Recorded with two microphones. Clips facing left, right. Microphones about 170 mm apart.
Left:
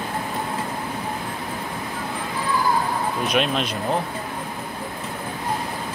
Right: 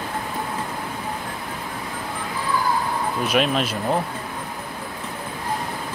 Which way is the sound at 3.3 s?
5° right (ahead or behind).